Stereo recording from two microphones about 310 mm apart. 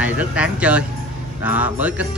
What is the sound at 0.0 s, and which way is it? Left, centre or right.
Speech, centre.